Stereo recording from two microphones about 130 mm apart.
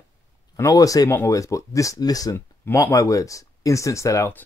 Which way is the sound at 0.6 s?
25° left (ahead or behind).